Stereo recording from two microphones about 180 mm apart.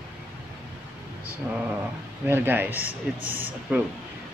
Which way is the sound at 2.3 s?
10° right (ahead or behind).